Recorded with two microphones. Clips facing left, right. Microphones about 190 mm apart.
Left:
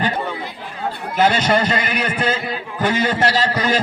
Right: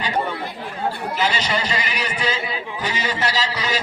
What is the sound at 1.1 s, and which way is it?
A man's voice, 50° left (ahead or behind).